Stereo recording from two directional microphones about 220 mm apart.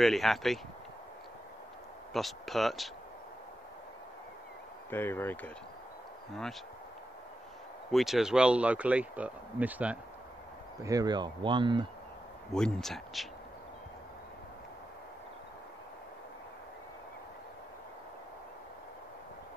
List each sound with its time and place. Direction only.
0.0 s speech: centre (ahead or behind)
2.1 s speech: centre (ahead or behind)
4.9 s speech: 10° left (ahead or behind)
7.9 s speech: centre (ahead or behind); by 11.8 s 20° right (ahead or behind)
12.5 s speech: 5° left (ahead or behind)